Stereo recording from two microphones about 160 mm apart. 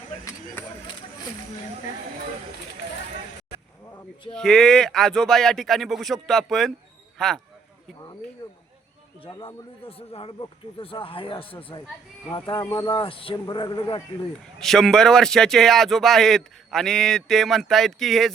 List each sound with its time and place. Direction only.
4.3 s a man's voice: 5° left (ahead or behind)
9.4 s speech: 35° left (ahead or behind)
12.5 s speech: 20° left (ahead or behind)
12.9 s speech: 35° left (ahead or behind)
14.6 s a man's voice: centre (ahead or behind)